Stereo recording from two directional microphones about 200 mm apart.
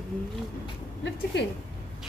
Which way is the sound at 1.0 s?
60° left (ahead or behind).